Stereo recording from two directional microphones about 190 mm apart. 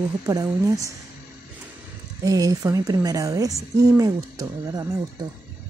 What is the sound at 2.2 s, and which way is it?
A woman's voice, 15° right (ahead or behind).